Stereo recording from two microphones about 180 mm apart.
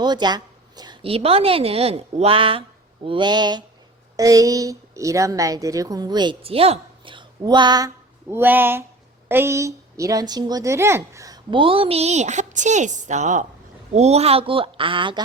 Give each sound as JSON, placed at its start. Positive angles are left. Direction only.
{"t": 0.0, "sound": "a woman's voice", "side_deg": -25}